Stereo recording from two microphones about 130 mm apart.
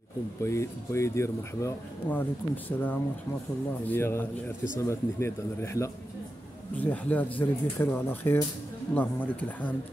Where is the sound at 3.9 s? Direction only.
15° left (ahead or behind).